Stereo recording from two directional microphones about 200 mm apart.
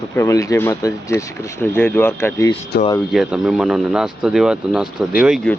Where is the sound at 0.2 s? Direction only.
15° left (ahead or behind).